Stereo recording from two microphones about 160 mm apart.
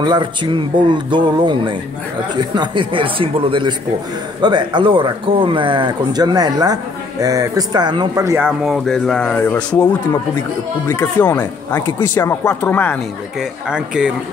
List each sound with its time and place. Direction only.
0.0 s speech: 30° right (ahead or behind)
8.5 s speech: centre (ahead or behind)
11.0 s speech: 10° left (ahead or behind)
13.4 s speech: 5° right (ahead or behind)